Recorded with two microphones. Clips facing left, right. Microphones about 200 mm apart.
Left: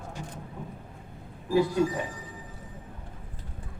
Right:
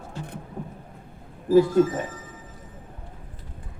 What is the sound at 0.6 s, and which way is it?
Vehicle, 45° right (ahead or behind).